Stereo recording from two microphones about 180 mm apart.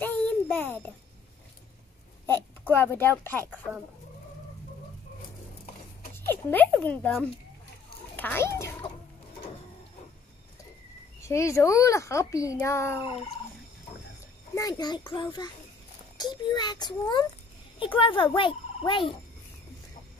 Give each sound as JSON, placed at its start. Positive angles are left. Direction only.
{"t": 0.0, "sound": "child singing", "side_deg": 10}
{"t": 2.2, "sound": "speech", "side_deg": 10}
{"t": 6.1, "sound": "a child's voice", "side_deg": 10}
{"t": 11.2, "sound": "speech", "side_deg": 15}
{"t": 14.5, "sound": "a child's voice", "side_deg": 20}
{"t": 16.5, "sound": "a child's voice", "side_deg": 25}